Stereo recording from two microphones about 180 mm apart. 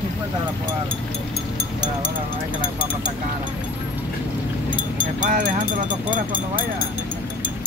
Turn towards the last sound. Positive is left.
turn(degrees=-45)  # may be behind; listen again after turning